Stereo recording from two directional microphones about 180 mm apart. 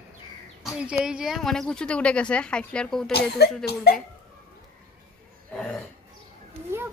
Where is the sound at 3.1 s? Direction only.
65° left (ahead or behind).